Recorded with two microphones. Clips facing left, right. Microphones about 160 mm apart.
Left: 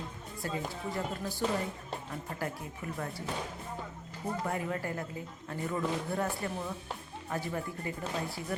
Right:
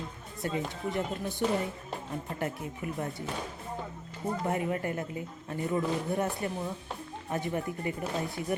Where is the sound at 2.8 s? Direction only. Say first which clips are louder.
Right 3 dB; 20° right (ahead or behind).